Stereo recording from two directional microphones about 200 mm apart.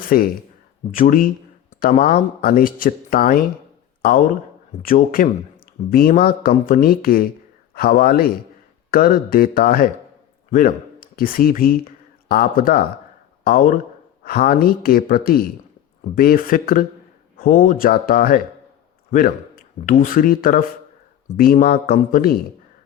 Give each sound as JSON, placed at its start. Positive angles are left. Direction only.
{"t": 0.0, "sound": "speech", "side_deg": 45}